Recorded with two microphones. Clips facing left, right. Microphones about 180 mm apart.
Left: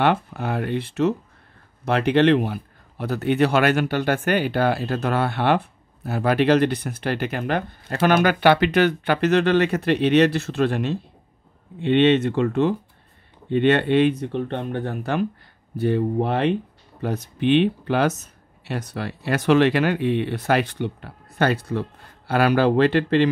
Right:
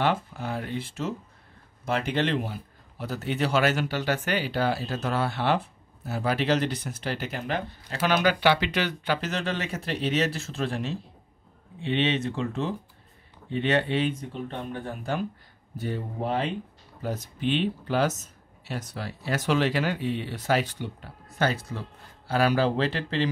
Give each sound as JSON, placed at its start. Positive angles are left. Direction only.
{"t": 0.0, "sound": "speech", "side_deg": 65}